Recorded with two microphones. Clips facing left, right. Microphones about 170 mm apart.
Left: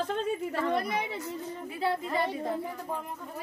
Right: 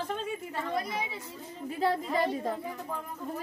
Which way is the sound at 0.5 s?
65° left (ahead or behind).